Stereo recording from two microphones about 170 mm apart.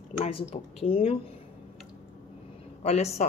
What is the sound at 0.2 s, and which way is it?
Speech, 35° left (ahead or behind).